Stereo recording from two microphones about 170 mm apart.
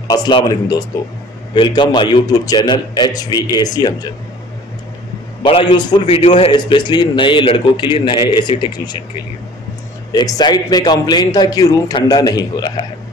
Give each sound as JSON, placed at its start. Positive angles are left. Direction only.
{"t": 0.1, "sound": "a man's voice", "side_deg": 25}
{"t": 5.4, "sound": "a man's voice", "side_deg": 30}
{"t": 6.5, "sound": "a man's voice", "side_deg": 25}
{"t": 10.1, "sound": "a man's voice", "side_deg": 25}